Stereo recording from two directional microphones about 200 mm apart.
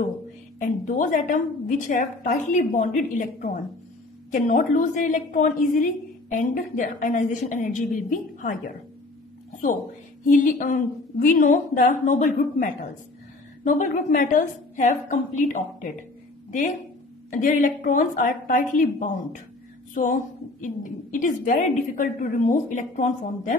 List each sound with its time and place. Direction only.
0.6 s a woman's voice: 40° left (ahead or behind)
10.2 s a woman's voice: 40° left (ahead or behind)
17.3 s a woman's voice: 40° left (ahead or behind)